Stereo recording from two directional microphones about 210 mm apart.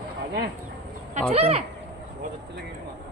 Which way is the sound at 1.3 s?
30° right (ahead or behind).